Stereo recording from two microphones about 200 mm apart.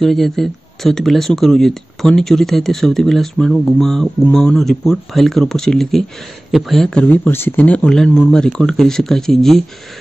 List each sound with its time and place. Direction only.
0.0 s speech: centre (ahead or behind)